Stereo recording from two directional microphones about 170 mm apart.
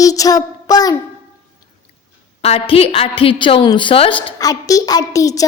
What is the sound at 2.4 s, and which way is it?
A child's voice, 35° left (ahead or behind).